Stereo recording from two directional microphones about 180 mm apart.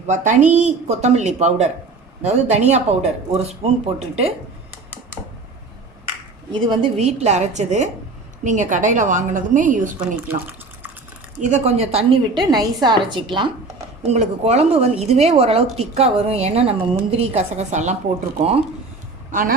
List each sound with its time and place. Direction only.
0.1 s speech: 40° right (ahead or behind)
6.5 s a woman's voice: 30° right (ahead or behind)
10.0 s water tap: 10° right (ahead or behind)
11.3 s a woman's voice: 40° right (ahead or behind); by 13.2 s 25° right (ahead or behind)
14.1 s speech: 35° right (ahead or behind)
19.3 s speech: 50° right (ahead or behind)